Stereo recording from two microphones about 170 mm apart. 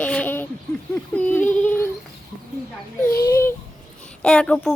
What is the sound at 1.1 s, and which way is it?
Yodeling, 10° left (ahead or behind).